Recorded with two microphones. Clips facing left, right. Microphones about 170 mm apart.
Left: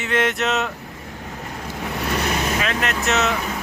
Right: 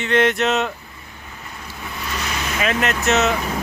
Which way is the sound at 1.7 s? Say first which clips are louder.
Left 5 dB; 70° left (ahead or behind).